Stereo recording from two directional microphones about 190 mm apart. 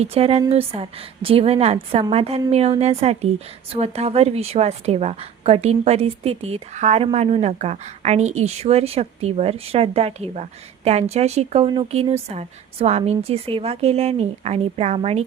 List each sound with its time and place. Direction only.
0.0 s a woman's voice: 30° right (ahead or behind)